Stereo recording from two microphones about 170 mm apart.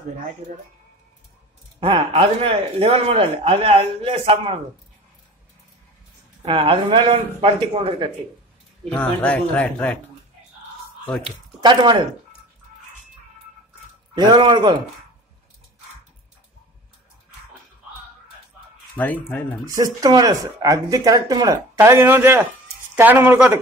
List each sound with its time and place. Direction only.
1.8 s a man's voice: 30° right (ahead or behind)
6.4 s a man's voice: 30° right (ahead or behind)
8.9 s speech: 10° left (ahead or behind)
11.2 s speech: 30° right (ahead or behind)
14.1 s speech: 25° right (ahead or behind)
18.9 s speech: 10° left (ahead or behind)
19.7 s a man's voice: 20° right (ahead or behind)